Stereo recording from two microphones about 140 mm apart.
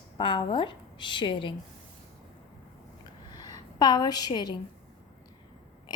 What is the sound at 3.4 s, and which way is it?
A woman's voice, 30° left (ahead or behind).